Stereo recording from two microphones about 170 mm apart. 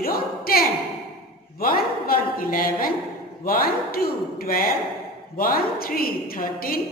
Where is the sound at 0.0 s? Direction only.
60° left (ahead or behind).